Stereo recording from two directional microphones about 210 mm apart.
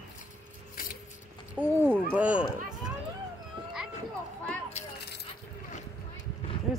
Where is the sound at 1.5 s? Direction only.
10° right (ahead or behind).